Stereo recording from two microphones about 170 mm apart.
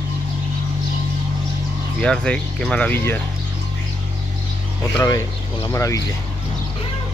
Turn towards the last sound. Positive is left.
turn(degrees=20)  # may be behind; listen again after turning